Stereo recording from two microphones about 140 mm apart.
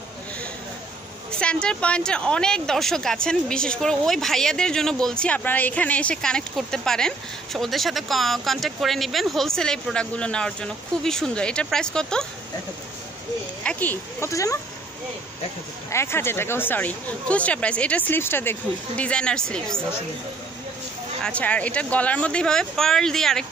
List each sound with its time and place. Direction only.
1.4 s speech: 5° left (ahead or behind)
13.7 s speech: 10° left (ahead or behind)
14.3 s speech: 20° left (ahead or behind)
15.9 s speech: 20° left (ahead or behind)
21.2 s speech: 10° left (ahead or behind)